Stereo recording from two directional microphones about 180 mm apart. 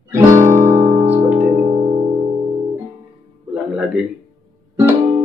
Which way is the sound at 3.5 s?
5° right (ahead or behind).